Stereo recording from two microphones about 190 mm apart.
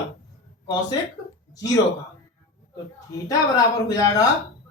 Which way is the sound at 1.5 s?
20° left (ahead or behind).